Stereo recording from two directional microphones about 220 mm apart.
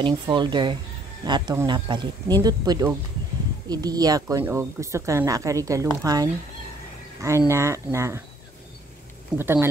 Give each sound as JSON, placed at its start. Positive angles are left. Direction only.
{"t": 0.0, "sound": "a woman's voice", "side_deg": -20}
{"t": 9.4, "sound": "a woman's voice", "side_deg": -10}